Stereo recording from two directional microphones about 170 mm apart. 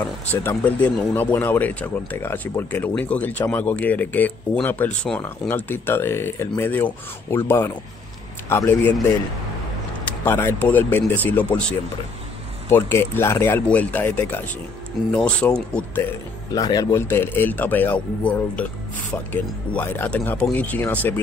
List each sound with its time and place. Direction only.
0.3 s speech: 10° left (ahead or behind)
10.0 s speech: 10° left (ahead or behind)
12.6 s speech: 15° left (ahead or behind)
16.5 s speech: 20° left (ahead or behind)